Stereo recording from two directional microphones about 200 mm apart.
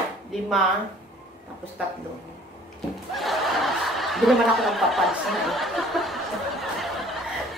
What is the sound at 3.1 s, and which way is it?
Snicker, centre (ahead or behind).